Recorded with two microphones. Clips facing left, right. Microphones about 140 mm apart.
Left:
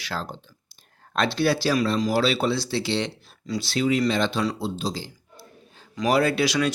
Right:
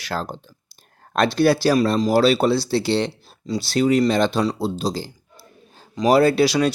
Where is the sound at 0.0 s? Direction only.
45° right (ahead or behind).